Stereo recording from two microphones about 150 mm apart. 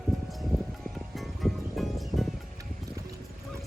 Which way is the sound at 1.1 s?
Centre (ahead or behind).